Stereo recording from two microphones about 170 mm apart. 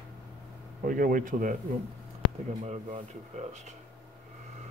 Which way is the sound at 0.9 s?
55° right (ahead or behind).